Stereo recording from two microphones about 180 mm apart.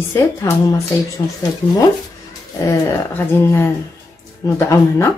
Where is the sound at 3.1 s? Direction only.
10° left (ahead or behind).